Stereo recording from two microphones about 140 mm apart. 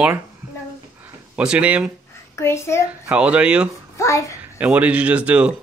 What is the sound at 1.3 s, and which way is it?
Speech, 5° right (ahead or behind).